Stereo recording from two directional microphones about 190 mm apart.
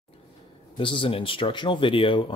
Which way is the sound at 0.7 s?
25° left (ahead or behind).